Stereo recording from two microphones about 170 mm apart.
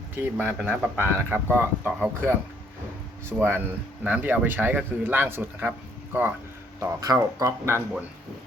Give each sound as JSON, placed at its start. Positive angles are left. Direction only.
{"t": 0.2, "sound": "speech", "side_deg": -10}
{"t": 6.7, "sound": "speech", "side_deg": -20}